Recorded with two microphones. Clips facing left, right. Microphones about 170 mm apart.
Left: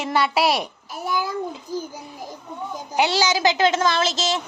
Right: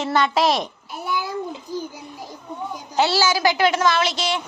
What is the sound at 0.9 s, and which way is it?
A child's voice, 40° left (ahead or behind).